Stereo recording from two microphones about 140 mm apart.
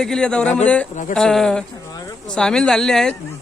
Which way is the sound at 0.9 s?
60° left (ahead or behind).